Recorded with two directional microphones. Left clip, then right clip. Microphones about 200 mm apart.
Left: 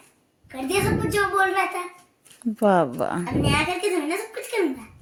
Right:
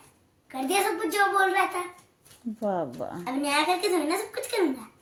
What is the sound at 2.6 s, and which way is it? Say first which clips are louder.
Speech: left 10 dB; 25° left (ahead or behind).